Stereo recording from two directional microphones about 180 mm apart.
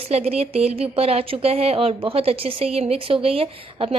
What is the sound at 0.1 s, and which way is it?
Speech, 35° right (ahead or behind).